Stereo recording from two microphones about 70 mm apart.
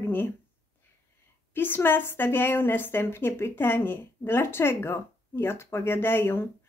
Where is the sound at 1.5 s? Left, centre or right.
Left.